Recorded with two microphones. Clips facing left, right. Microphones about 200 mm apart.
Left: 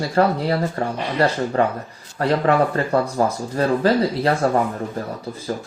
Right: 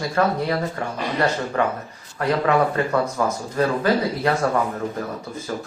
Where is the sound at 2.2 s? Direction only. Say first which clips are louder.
Left 2 dB; 35° left (ahead or behind).